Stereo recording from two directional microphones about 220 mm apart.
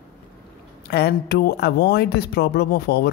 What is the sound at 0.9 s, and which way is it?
Speech, 45° left (ahead or behind).